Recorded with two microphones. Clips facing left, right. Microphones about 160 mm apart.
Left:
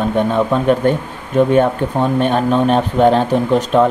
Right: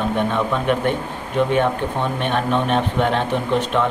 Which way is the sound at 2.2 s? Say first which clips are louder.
Left 5 dB; 40° left (ahead or behind).